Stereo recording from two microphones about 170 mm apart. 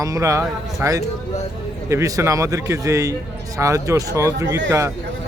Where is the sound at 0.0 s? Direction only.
20° right (ahead or behind).